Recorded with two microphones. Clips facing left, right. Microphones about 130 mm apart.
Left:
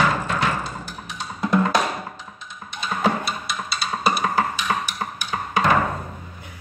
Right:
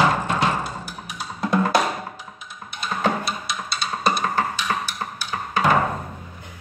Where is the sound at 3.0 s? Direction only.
Centre (ahead or behind).